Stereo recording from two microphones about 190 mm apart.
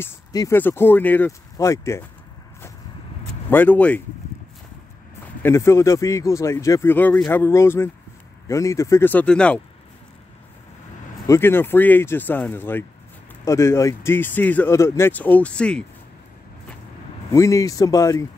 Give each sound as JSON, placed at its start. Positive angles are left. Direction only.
{"t": 0.0, "sound": "speech", "side_deg": 15}
{"t": 3.4, "sound": "speech", "side_deg": 10}
{"t": 5.4, "sound": "speech", "side_deg": 15}
{"t": 11.2, "sound": "speech", "side_deg": 15}
{"t": 17.3, "sound": "speech", "side_deg": 15}